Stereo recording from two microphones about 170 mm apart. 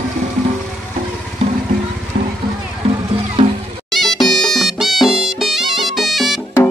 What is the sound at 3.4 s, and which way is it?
Music, 35° right (ahead or behind).